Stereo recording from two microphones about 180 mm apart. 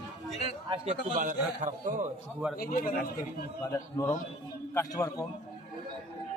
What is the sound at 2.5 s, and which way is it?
Speech, 50° left (ahead or behind).